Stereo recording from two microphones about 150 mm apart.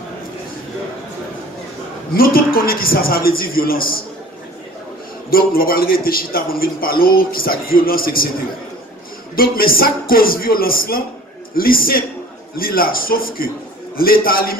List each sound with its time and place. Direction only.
2.1 s a man's voice: 80° left
5.3 s a man's voice: 75° left (ahead or behind)
9.3 s a man's voice: 75° left (ahead or behind)